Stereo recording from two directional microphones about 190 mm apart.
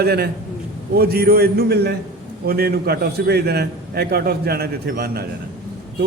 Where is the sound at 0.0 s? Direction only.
55° right (ahead or behind).